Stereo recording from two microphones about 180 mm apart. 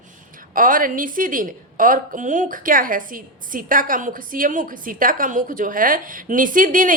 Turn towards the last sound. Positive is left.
turn(degrees=-50)  # may be behind; listen again after turning